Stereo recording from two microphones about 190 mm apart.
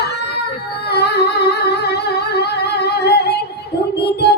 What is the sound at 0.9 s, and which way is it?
Music, 60° left (ahead or behind).